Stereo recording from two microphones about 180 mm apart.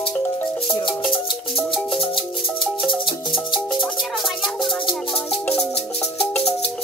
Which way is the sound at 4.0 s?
Centre (ahead or behind).